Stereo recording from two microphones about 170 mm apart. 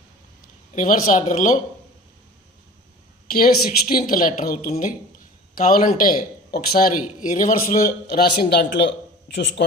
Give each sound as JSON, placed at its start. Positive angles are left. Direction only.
{"t": 0.8, "sound": "a man's voice", "side_deg": 45}
{"t": 3.6, "sound": "a woman's voice", "side_deg": 60}
{"t": 8.0, "sound": "a man's voice", "side_deg": 65}